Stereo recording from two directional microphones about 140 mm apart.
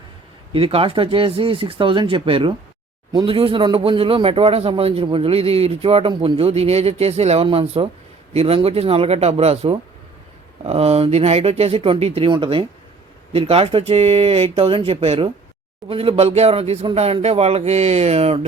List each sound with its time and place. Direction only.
0.5 s speech: 40° right (ahead or behind)